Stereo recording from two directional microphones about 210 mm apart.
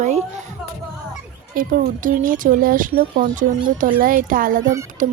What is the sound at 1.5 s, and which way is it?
A woman's voice, 40° right (ahead or behind).